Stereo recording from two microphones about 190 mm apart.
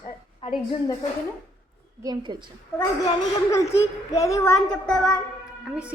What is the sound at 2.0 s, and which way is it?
Speech, 20° right (ahead or behind).